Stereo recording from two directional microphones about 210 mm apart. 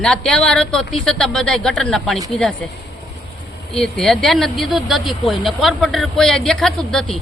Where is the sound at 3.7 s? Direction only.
5° left (ahead or behind).